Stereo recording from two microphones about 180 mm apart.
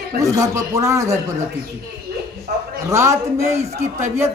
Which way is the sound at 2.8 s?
15° right (ahead or behind).